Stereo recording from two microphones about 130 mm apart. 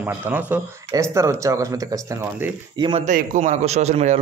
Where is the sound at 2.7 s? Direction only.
35° right (ahead or behind).